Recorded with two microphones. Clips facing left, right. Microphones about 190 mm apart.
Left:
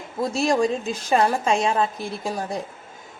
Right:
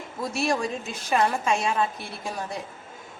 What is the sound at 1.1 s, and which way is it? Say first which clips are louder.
A woman's voice: left 3 dB; 30° left (ahead or behind).